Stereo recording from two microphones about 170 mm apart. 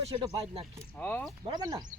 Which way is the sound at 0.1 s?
30° right (ahead or behind).